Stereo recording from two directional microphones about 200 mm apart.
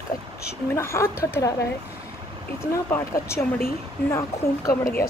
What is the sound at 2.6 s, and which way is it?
Speech, 15° left (ahead or behind).